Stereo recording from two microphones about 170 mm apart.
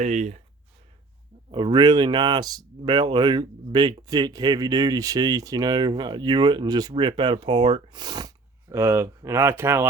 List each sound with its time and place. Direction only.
0.0 s speech: 45° right (ahead or behind)
1.5 s speech: 30° right (ahead or behind)
8.7 s speech: 15° right (ahead or behind)